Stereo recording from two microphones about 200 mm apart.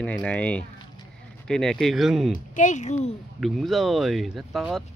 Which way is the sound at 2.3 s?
40° left (ahead or behind).